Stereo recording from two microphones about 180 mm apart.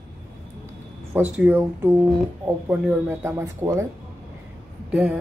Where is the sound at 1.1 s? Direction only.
10° right (ahead or behind).